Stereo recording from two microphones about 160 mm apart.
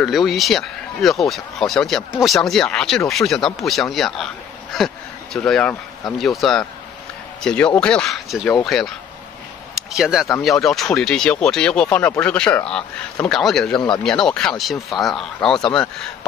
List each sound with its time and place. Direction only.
0.0 s speech: centre (ahead or behind)
4.7 s a sound: centre (ahead or behind)
6.1 s speech: centre (ahead or behind)
13.7 s speech: 30° left (ahead or behind)
14.0 s speech: 5° left (ahead or behind)